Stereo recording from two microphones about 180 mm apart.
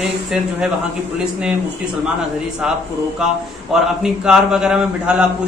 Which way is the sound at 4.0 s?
5° right (ahead or behind).